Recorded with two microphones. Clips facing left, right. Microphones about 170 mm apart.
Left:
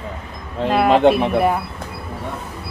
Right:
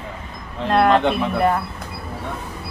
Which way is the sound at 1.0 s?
40° left (ahead or behind).